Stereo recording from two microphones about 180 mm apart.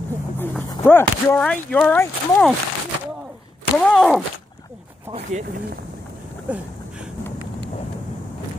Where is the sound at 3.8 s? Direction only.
Centre (ahead or behind).